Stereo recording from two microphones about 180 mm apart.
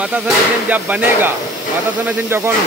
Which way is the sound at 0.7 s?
10° right (ahead or behind).